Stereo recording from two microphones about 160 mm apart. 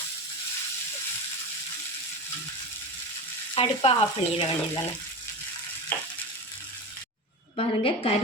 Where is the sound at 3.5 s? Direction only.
35° left (ahead or behind).